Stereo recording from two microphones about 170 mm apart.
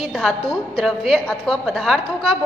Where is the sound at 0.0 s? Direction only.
Centre (ahead or behind).